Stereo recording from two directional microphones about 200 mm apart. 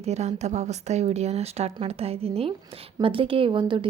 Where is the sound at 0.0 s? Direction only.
35° right (ahead or behind).